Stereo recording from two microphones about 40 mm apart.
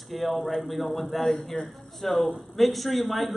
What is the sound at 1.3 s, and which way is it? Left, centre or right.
Speech, centre.